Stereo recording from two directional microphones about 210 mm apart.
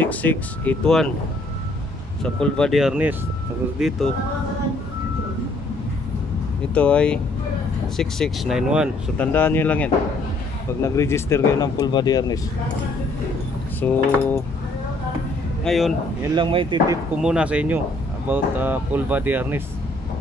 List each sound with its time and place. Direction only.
0.0 s speech: 5° left (ahead or behind)
2.4 s speech: 5° left (ahead or behind)
6.7 s speech: 5° left (ahead or behind)
9.2 s speech: 10° left (ahead or behind)
13.7 s speech: 10° left (ahead or behind)
15.6 s a man's voice: centre (ahead or behind)
16.3 s speech: 25° right (ahead or behind)
17.2 s speech: 5° right (ahead or behind)